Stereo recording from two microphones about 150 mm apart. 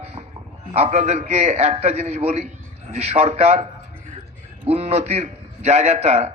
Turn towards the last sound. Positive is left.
turn(degrees=-45)  # may be behind; listen again after turning